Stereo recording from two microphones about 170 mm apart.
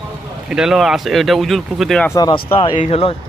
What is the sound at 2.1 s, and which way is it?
Speech, 25° left (ahead or behind).